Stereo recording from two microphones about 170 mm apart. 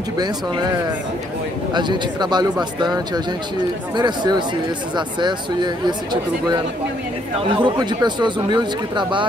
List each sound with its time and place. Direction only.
1.7 s speech: 25° right (ahead or behind)
3.9 s speech: 25° right (ahead or behind)
7.3 s speech: 25° right (ahead or behind)